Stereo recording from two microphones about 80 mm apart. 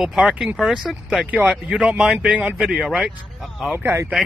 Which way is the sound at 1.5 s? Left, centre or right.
Centre.